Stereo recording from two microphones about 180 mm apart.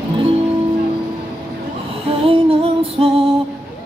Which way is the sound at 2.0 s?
30° right (ahead or behind).